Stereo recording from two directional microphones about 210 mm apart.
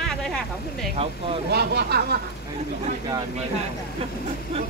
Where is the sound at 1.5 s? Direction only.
50° right (ahead or behind).